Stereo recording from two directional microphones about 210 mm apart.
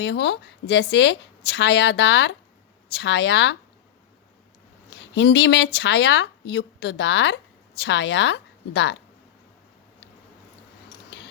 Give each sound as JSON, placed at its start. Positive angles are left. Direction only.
{"t": 0.0, "sound": "a woman's voice", "side_deg": 55}
{"t": 4.9, "sound": "a woman's voice", "side_deg": 55}
{"t": 11.1, "sound": "a sound", "side_deg": 55}